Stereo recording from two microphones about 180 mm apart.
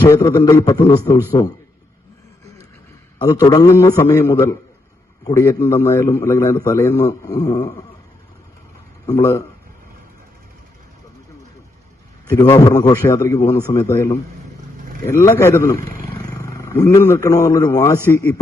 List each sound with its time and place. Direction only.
0.0 s a man's voice: 20° left (ahead or behind)
3.2 s a man's voice: 20° left (ahead or behind)
9.0 s a man's voice: 15° left (ahead or behind)
12.4 s a man's voice: 20° left (ahead or behind)